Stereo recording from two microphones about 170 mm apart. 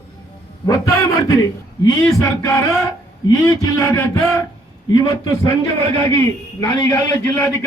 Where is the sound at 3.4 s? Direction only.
20° left (ahead or behind).